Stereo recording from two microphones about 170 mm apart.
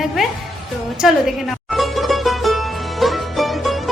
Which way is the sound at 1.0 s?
Centre (ahead or behind).